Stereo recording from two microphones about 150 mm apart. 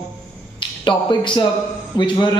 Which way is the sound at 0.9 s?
30° left (ahead or behind).